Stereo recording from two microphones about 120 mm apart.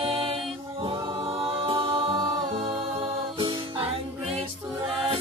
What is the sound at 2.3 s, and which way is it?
Music, 45° right (ahead or behind).